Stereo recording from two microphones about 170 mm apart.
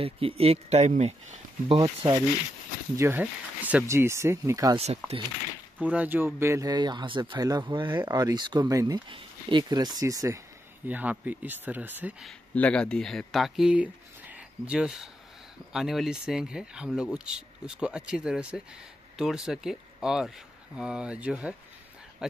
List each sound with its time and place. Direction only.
0.0 s speech: 35° right (ahead or behind)
3.0 s speech: 10° right (ahead or behind)
4.7 s speech: 35° right (ahead or behind)
5.8 s speech: 10° right (ahead or behind)
12.5 s speech: 5° left (ahead or behind)